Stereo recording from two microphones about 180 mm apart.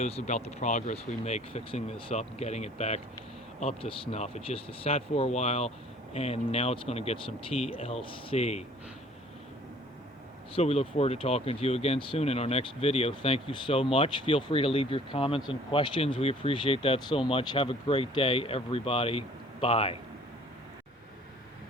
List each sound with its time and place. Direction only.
0.0 s speech: 40° left (ahead or behind)
10.5 s speech: 35° left (ahead or behind)